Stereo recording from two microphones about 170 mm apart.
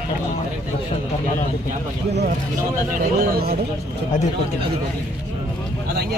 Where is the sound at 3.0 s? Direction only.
60° right (ahead or behind).